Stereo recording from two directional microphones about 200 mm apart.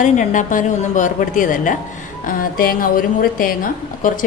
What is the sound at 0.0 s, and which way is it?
A woman's voice, 40° left (ahead or behind).